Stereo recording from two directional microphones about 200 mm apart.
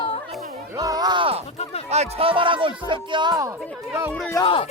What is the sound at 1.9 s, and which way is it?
Speech, 30° right (ahead or behind).